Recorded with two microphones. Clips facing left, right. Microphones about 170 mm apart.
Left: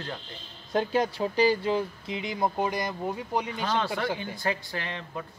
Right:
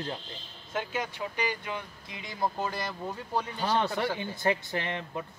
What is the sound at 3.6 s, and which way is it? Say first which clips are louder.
Speech: right 4 dB; 10° right (ahead or behind).